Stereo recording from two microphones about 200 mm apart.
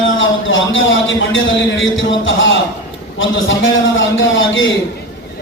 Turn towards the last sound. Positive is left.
turn(degrees=70)  # may be behind; listen again after turning